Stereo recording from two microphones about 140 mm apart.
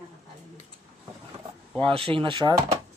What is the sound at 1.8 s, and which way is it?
Speech, 40° right (ahead or behind).